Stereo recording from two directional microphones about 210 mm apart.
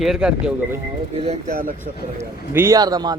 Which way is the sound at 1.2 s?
40° right (ahead or behind).